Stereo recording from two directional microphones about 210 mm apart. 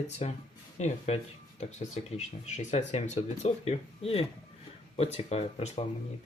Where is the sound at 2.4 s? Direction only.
35° left (ahead or behind).